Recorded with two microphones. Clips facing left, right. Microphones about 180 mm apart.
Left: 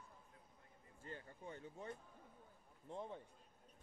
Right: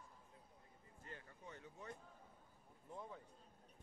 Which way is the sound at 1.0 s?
30° left (ahead or behind).